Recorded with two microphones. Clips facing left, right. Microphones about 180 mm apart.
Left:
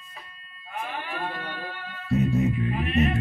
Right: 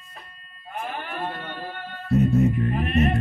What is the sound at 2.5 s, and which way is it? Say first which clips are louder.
Music: right 3 dB; 50° right (ahead or behind).